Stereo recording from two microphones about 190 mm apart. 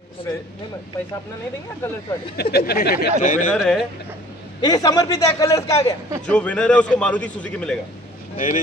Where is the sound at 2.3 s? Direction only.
55° left (ahead or behind).